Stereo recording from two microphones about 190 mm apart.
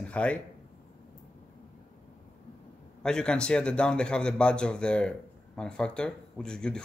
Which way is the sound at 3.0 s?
5° left (ahead or behind).